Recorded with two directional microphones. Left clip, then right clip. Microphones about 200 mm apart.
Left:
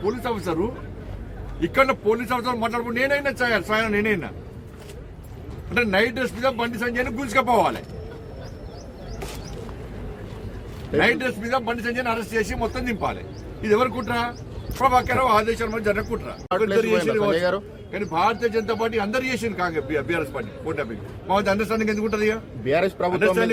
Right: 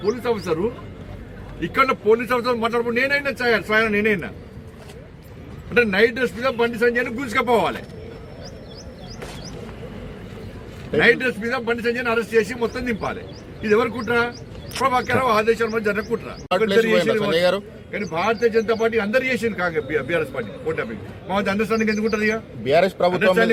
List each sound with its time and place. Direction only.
0.0 s a man's voice: 15° left (ahead or behind)
1.6 s a man's voice: 15° left (ahead or behind)
5.7 s a man's voice: 10° left (ahead or behind)
10.9 s a man's voice: 15° left (ahead or behind)
16.6 s speech: 25° right (ahead or behind)
18.1 s a man's voice: 10° left (ahead or behind)
22.6 s speech: 20° right (ahead or behind)